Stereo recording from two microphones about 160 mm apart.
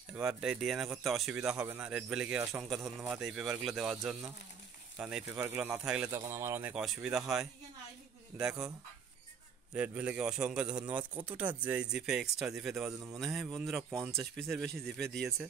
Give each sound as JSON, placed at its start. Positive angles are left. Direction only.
{"t": 0.1, "sound": "speech", "side_deg": -5}
{"t": 6.8, "sound": "speech", "side_deg": -5}
{"t": 9.8, "sound": "speech", "side_deg": -10}